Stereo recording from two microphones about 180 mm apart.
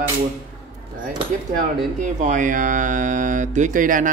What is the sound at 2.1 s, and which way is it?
Speech, 45° right (ahead or behind).